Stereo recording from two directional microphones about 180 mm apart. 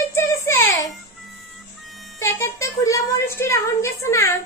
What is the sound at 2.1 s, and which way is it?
Speech, 15° left (ahead or behind).